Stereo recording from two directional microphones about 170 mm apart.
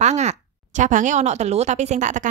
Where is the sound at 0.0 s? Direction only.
40° right (ahead or behind).